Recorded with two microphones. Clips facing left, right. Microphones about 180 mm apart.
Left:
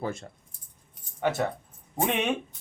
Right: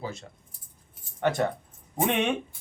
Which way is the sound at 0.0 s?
50° left (ahead or behind).